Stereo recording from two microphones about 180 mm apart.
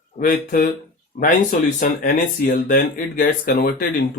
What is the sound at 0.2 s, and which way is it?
Speech, 50° left (ahead or behind).